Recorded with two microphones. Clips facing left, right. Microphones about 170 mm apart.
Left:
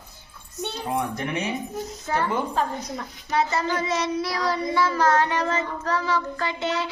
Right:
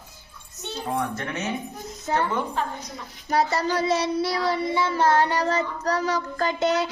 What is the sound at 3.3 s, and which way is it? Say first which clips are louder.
Child singing: right 1 dB; 35° right (ahead or behind).